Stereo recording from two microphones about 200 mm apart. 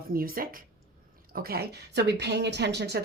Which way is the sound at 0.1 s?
45° right (ahead or behind).